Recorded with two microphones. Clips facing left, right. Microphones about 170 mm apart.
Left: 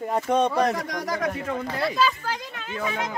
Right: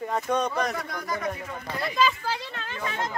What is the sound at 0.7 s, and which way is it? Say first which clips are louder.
Speech: left 4 dB; 90° left.